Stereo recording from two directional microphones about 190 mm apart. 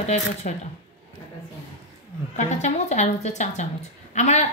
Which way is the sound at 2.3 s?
35° left (ahead or behind).